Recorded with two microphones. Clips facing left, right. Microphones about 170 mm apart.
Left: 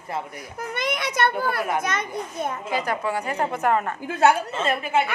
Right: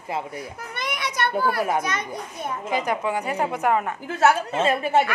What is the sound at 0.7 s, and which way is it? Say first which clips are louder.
Speech: left 3 dB; 50° left (ahead or behind).